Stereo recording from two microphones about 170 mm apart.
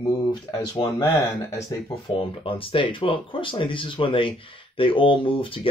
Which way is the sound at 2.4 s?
30° left (ahead or behind).